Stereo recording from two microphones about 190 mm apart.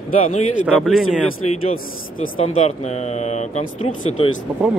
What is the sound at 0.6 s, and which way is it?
Speech, 5° right (ahead or behind).